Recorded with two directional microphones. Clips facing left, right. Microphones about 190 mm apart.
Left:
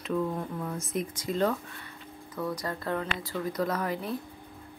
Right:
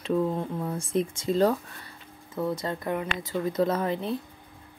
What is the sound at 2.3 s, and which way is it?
A woman's voice, 25° right (ahead or behind).